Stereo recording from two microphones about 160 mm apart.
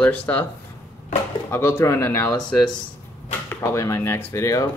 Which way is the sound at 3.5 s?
20° left (ahead or behind).